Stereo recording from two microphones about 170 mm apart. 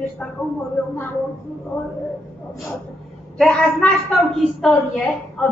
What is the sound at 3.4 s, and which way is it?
A woman's voice, centre (ahead or behind).